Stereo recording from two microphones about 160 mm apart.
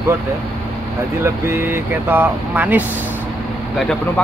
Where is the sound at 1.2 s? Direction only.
15° right (ahead or behind).